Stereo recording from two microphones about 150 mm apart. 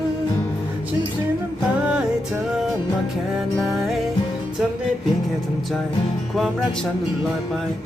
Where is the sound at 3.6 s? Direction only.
Centre (ahead or behind).